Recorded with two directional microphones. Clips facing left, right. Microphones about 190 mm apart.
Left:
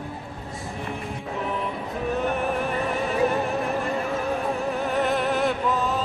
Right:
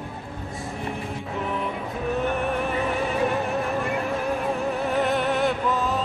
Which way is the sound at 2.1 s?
Centre (ahead or behind).